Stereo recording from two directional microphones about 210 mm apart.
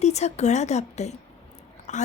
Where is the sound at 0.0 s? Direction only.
30° left (ahead or behind).